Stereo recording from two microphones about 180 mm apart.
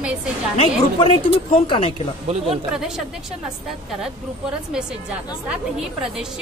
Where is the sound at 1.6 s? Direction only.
35° left (ahead or behind).